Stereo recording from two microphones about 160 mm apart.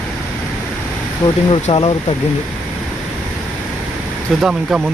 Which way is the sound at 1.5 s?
35° left (ahead or behind).